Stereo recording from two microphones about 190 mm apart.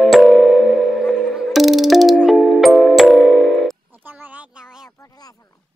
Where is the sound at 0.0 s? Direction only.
Centre (ahead or behind).